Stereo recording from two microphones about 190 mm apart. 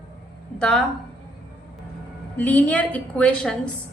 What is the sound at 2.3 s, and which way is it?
A woman's voice, 10° left (ahead or behind).